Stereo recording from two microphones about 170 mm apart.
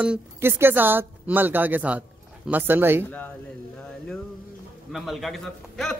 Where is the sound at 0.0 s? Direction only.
10° right (ahead or behind).